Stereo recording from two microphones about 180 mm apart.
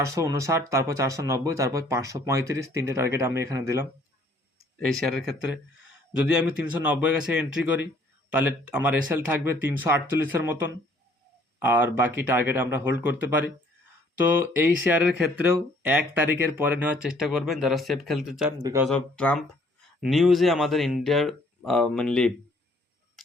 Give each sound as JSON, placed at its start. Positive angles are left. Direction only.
{"t": 0.0, "sound": "speech", "side_deg": -15}
{"t": 4.9, "sound": "speech", "side_deg": 0}
{"t": 18.6, "sound": "speech", "side_deg": -15}
{"t": 18.9, "sound": "speech", "side_deg": 5}